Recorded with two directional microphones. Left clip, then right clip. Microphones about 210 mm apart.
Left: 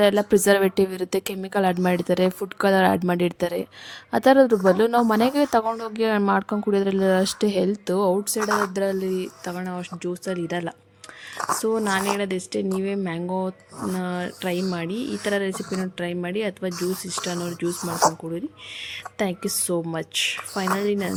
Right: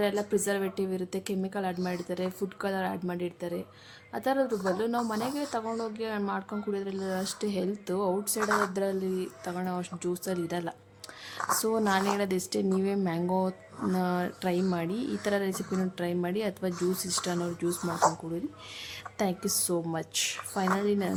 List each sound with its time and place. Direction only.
0.0 s speech: 50° left (ahead or behind); by 8.4 s 25° left (ahead or behind)
8.4 s speech: 50° left (ahead or behind)
8.7 s speech: 25° left (ahead or behind)
19.2 s speech: 20° left (ahead or behind)